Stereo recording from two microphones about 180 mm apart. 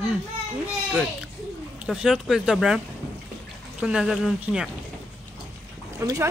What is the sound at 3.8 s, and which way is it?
Speech, 5° right (ahead or behind).